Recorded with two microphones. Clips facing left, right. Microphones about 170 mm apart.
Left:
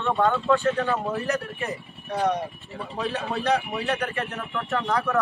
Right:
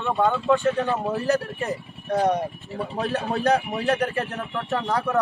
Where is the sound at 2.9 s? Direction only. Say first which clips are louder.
Right 2 dB; 45° right (ahead or behind).